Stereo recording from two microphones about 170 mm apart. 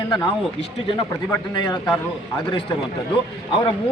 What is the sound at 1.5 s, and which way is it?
Speech, 25° left (ahead or behind).